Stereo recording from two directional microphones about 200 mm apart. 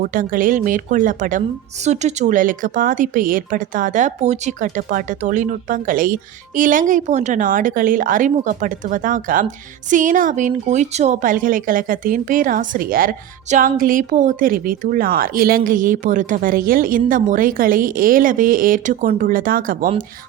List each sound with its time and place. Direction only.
0.0 s a woman's voice: 40° right (ahead or behind)